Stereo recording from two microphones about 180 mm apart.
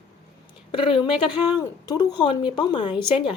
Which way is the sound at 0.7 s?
30° left (ahead or behind).